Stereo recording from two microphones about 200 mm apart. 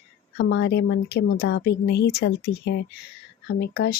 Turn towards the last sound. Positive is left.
turn(degrees=50)  # may be behind; listen again after turning